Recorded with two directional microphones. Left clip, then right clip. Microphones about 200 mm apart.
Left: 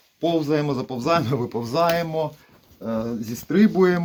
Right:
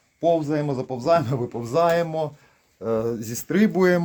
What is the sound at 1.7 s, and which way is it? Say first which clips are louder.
Speech: right 1 dB; 40° right (ahead or behind).